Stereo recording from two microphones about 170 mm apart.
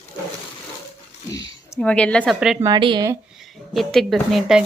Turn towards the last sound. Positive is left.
turn(degrees=0)  # may be behind; listen again after turning